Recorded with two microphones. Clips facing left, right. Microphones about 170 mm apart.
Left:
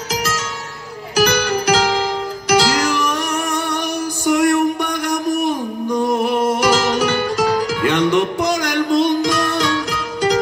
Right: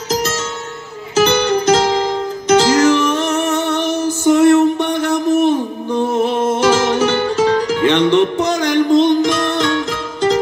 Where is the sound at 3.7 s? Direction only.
15° left (ahead or behind).